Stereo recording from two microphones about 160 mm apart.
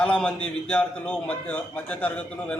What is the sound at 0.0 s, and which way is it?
A man's voice, 5° left (ahead or behind).